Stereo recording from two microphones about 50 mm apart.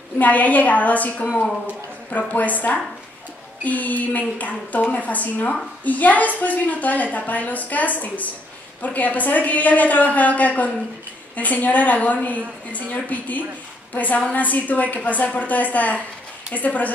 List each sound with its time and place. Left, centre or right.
0.2 s a woman's voice: left
2.1 s a woman's voice: left